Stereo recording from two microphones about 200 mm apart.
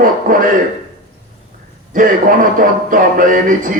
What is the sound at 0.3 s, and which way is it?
Speech, 45° right (ahead or behind).